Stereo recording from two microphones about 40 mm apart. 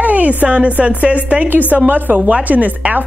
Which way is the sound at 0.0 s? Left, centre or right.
Right.